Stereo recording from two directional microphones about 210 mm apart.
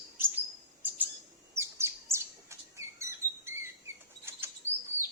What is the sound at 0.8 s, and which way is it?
Bird, 10° right (ahead or behind).